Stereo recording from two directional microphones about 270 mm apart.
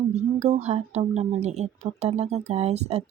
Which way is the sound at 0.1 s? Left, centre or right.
Right.